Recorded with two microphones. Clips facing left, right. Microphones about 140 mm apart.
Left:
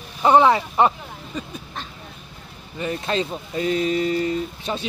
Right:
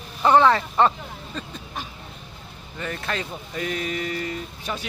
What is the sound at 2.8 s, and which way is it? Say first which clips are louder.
Speech: left 6 dB; 20° left (ahead or behind).